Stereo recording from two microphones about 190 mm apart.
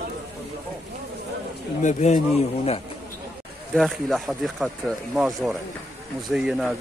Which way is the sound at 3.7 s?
Centre (ahead or behind).